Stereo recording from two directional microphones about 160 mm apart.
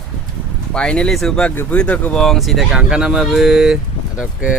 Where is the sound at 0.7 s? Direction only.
5° left (ahead or behind).